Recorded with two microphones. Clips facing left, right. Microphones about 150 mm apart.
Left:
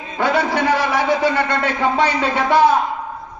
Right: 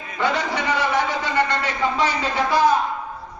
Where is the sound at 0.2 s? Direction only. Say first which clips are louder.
Left 5 dB; 65° left (ahead or behind).